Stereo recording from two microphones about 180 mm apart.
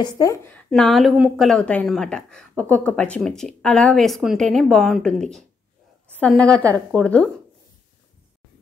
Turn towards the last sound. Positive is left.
turn(degrees=5)  # may be behind; listen again after turning